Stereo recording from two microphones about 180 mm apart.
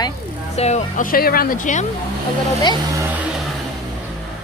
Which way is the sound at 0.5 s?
40° left (ahead or behind).